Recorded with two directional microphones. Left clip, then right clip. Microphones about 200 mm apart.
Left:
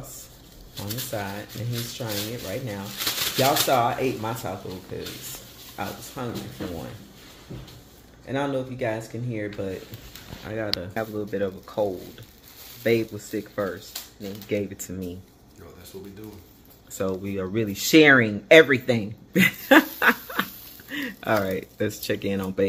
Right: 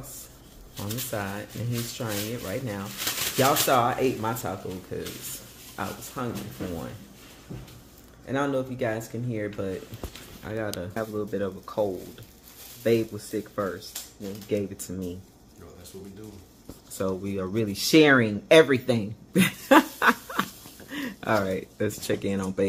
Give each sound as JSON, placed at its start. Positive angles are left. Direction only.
{"t": 1.1, "sound": "speech", "side_deg": -20}
{"t": 8.3, "sound": "speech", "side_deg": -15}
{"t": 17.0, "sound": "speech", "side_deg": -10}